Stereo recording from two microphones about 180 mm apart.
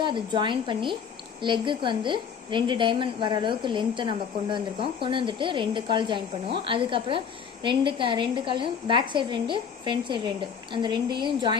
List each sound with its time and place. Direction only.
0.0 s a woman's voice: 25° right (ahead or behind)